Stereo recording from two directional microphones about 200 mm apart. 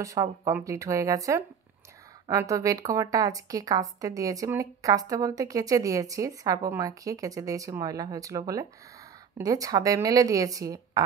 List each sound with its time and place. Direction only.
0.0 s a woman's voice: 15° right (ahead or behind)